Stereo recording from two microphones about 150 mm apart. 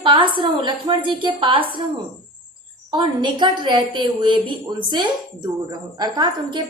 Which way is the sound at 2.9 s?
30° right (ahead or behind).